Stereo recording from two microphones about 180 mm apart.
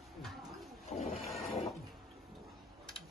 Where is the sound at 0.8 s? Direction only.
35° left (ahead or behind).